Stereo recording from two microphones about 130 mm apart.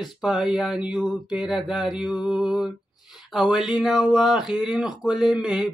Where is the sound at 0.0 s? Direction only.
5° right (ahead or behind).